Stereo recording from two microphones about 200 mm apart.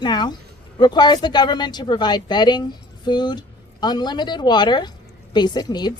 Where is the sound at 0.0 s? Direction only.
20° left (ahead or behind).